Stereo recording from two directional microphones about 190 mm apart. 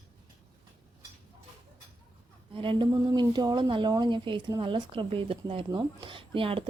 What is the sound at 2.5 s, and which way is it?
Speech, 25° right (ahead or behind).